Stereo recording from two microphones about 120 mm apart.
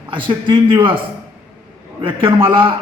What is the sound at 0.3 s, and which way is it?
A man's voice, 45° right (ahead or behind).